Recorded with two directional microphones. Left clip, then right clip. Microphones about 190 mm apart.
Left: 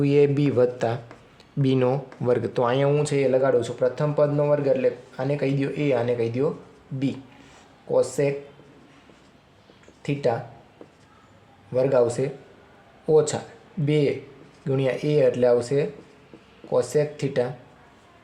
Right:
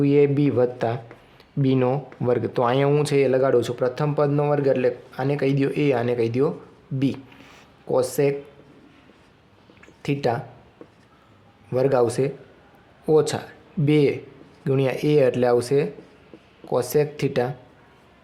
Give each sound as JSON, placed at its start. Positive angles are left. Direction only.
{"t": 0.0, "sound": "speech", "side_deg": -15}
{"t": 10.0, "sound": "speech", "side_deg": -45}
{"t": 11.7, "sound": "speech", "side_deg": -40}